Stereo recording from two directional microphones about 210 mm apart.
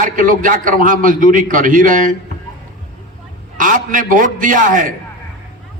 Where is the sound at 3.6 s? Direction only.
40° right (ahead or behind).